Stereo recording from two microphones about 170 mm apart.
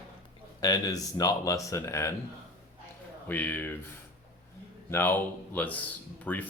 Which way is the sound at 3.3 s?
10° left (ahead or behind).